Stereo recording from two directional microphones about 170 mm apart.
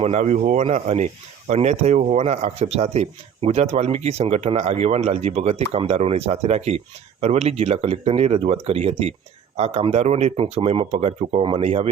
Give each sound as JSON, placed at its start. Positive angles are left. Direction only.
{"t": 0.0, "sound": "speech", "side_deg": -40}